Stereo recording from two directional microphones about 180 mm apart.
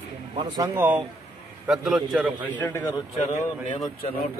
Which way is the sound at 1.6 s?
Centre (ahead or behind).